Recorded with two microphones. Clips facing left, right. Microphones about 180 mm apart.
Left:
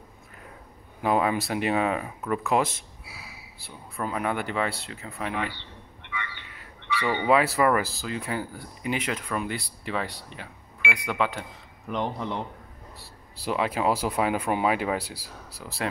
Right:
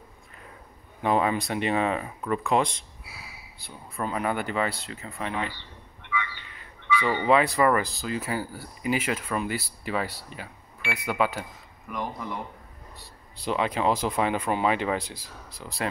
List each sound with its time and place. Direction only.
1.0 s speech: 5° left (ahead or behind)
7.1 s speech: 5° left (ahead or behind)
11.9 s speech: 25° left (ahead or behind)
13.4 s speech: 5° left (ahead or behind)